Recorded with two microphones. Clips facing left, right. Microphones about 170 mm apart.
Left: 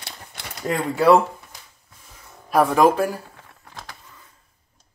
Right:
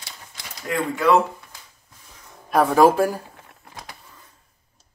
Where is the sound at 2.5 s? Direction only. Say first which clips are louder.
Right 1 dB; centre (ahead or behind).